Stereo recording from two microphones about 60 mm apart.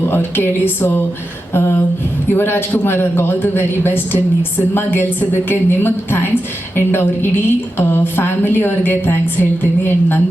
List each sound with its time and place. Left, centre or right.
0.1 s a woman's voice: left
1.5 s a sound: left
2.3 s a woman's voice: left